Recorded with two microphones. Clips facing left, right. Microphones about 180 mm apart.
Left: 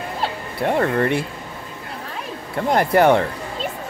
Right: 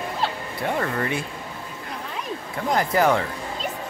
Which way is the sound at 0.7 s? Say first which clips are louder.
Left 7 dB; 55° left (ahead or behind).